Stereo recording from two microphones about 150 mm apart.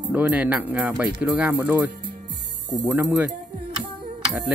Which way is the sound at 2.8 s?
20° right (ahead or behind).